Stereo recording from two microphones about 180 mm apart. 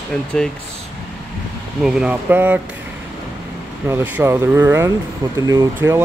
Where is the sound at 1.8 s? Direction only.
5° right (ahead or behind).